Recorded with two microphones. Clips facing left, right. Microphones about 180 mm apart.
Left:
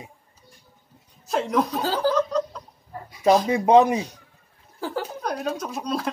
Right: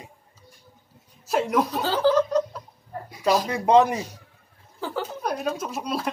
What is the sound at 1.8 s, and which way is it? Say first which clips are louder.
Speech: right 2 dB; 10° left (ahead or behind).